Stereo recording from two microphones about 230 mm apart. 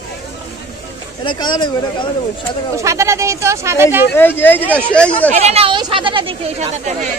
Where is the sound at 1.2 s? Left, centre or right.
Centre.